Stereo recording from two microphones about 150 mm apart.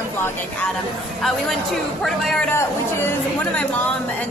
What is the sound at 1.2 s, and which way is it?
A woman's voice, centre (ahead or behind).